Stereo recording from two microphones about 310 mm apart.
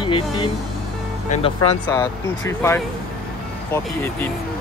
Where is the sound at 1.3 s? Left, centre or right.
Centre.